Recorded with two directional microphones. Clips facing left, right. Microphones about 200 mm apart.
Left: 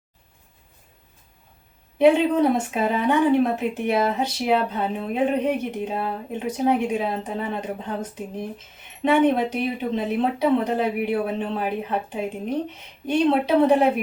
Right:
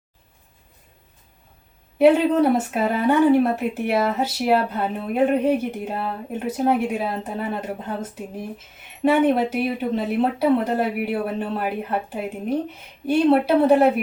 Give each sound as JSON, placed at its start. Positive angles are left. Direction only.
{"t": 2.0, "sound": "speech", "side_deg": -5}